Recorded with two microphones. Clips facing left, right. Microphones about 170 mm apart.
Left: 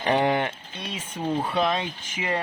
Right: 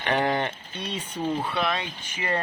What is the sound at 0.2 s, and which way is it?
Speech, 10° left (ahead or behind).